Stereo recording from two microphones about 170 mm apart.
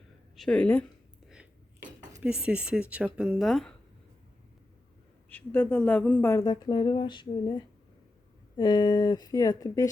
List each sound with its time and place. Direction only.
0.3 s speech: 5° left (ahead or behind)
1.8 s a sound: 50° right (ahead or behind)
2.2 s speech: 5° right (ahead or behind)
5.3 s speech: 10° left (ahead or behind)